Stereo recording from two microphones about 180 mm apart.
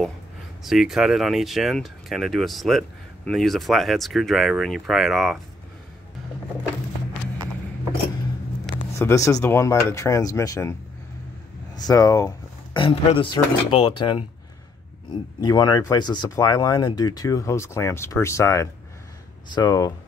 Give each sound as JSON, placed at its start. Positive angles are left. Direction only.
{"t": 0.7, "sound": "speech", "side_deg": 0}
{"t": 8.9, "sound": "speech", "side_deg": 15}